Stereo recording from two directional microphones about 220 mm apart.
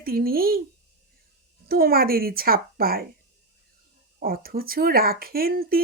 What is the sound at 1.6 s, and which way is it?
Speech, 40° right (ahead or behind).